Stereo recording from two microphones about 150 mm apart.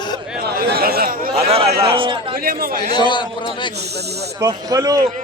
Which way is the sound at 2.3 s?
75° right (ahead or behind).